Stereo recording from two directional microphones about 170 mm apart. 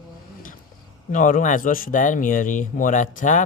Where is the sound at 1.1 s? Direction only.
50° left (ahead or behind).